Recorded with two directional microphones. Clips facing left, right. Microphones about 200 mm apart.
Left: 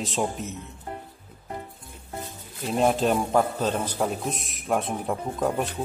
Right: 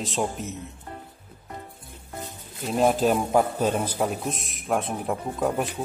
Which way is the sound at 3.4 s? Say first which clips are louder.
Right 1 dB; 15° right (ahead or behind).